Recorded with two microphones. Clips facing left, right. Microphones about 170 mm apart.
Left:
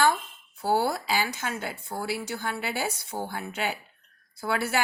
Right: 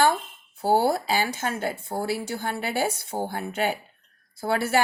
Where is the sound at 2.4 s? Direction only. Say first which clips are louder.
Right 3 dB; 25° right (ahead or behind).